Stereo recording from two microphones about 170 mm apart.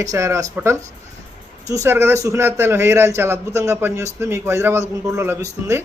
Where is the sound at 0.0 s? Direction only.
20° right (ahead or behind).